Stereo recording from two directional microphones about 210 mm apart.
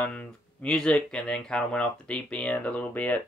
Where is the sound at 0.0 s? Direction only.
5° left (ahead or behind).